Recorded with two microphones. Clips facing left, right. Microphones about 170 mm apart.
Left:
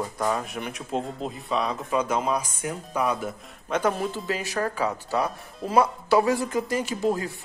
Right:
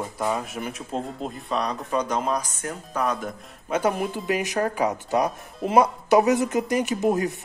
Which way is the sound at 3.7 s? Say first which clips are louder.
Right 1 dB; 10° right (ahead or behind).